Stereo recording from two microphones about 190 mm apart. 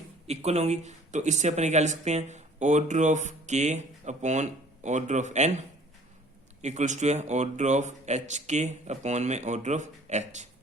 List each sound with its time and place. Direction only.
0.3 s speech: 35° right (ahead or behind)